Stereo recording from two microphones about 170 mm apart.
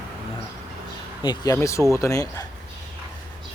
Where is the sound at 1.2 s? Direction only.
20° left (ahead or behind).